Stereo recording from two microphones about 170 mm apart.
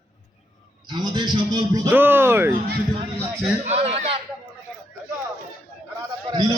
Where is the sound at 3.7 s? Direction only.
35° right (ahead or behind).